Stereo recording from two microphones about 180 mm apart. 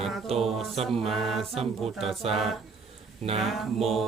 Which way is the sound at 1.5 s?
35° right (ahead or behind).